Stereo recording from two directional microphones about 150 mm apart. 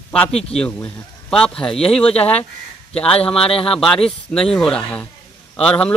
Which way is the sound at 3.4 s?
40° left (ahead or behind).